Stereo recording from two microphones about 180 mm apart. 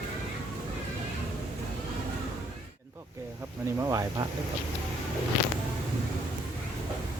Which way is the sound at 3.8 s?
20° right (ahead or behind).